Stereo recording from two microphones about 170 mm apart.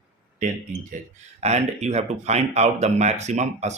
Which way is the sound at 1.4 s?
40° right (ahead or behind).